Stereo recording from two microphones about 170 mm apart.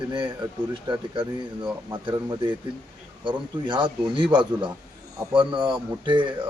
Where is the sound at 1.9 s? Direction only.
25° right (ahead or behind).